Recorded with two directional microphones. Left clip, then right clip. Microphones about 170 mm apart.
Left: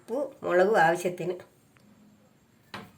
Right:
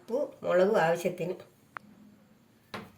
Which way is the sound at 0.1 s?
50° left (ahead or behind).